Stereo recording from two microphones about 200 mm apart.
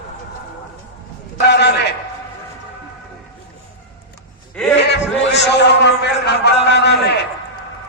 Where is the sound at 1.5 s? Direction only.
55° left (ahead or behind).